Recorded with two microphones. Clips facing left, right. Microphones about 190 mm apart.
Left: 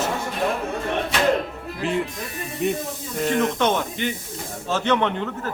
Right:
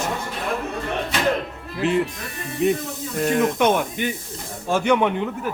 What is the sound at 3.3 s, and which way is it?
Speech, 10° right (ahead or behind).